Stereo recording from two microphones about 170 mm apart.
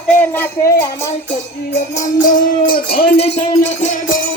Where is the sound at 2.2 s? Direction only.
50° left (ahead or behind).